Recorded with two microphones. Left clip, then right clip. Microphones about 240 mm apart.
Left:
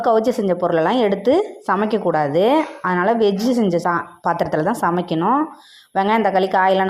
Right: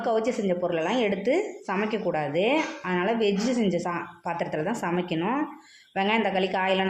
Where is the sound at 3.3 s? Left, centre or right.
Left.